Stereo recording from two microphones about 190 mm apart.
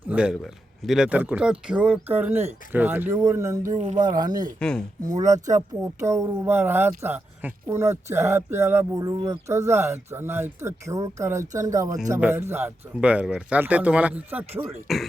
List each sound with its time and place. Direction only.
0.1 s speech: 5° right (ahead or behind)
3.8 s speech: 35° right (ahead or behind)
4.0 s speech: 20° right (ahead or behind); by 15.0 s centre (ahead or behind)